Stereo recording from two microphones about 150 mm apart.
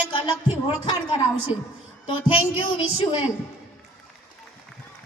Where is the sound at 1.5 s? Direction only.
40° left (ahead or behind).